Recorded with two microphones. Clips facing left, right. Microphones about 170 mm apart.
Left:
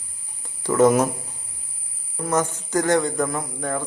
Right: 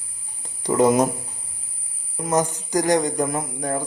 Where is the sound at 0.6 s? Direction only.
15° right (ahead or behind).